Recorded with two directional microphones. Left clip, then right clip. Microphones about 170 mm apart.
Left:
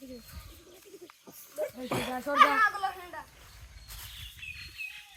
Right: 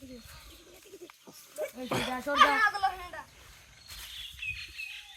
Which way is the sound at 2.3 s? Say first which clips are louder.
Left 1 dB; 55° right (ahead or behind).